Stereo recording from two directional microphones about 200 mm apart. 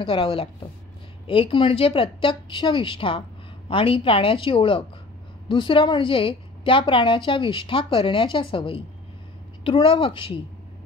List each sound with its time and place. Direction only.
0.0 s a woman's voice: 25° left (ahead or behind)